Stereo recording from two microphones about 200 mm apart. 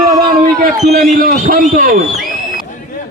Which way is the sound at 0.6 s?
35° right (ahead or behind).